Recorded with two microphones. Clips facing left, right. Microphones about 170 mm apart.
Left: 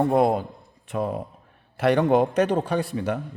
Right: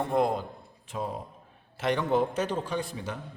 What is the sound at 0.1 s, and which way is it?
A man's voice, 65° left (ahead or behind).